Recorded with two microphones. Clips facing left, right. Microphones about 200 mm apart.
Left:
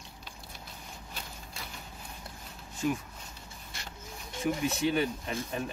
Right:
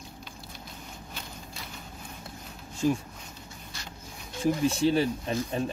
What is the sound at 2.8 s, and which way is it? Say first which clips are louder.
Speech: right 5 dB; 30° right (ahead or behind).